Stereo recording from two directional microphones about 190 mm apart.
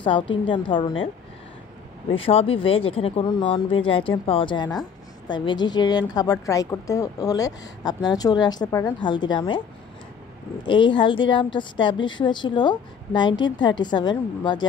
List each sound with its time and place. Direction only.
0.0 s a woman's voice: 25° left (ahead or behind)
2.0 s a woman's voice: 30° left (ahead or behind)
10.6 s a woman's voice: 25° left (ahead or behind)